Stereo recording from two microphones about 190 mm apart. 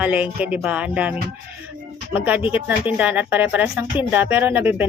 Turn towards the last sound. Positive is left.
turn(degrees=-10)  # may be behind; listen again after turning